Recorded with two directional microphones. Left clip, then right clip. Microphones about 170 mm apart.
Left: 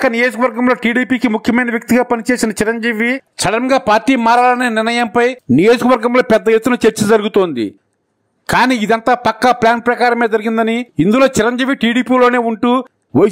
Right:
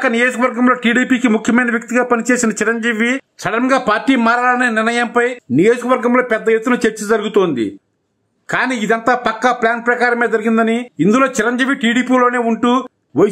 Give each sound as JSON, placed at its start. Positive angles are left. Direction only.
{"t": 0.0, "sound": "a man's voice", "side_deg": 35}
{"t": 3.3, "sound": "a man's voice", "side_deg": 45}